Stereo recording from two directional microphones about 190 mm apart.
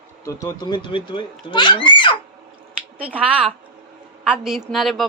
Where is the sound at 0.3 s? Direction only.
20° left (ahead or behind).